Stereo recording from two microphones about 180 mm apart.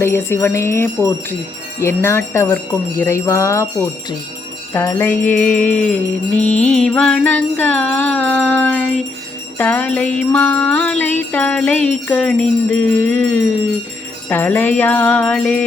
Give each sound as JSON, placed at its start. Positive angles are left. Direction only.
{"t": 0.0, "sound": "music", "side_deg": 15}